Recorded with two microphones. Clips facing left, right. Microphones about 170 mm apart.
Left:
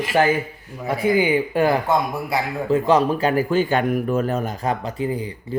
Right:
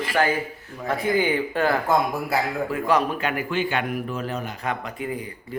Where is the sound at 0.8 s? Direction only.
10° left (ahead or behind).